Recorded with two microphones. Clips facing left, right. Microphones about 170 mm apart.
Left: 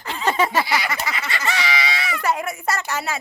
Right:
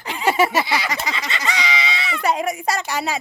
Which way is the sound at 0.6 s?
25° right (ahead or behind).